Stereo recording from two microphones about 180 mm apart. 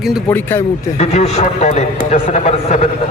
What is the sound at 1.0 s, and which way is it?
A man's voice, 40° left (ahead or behind).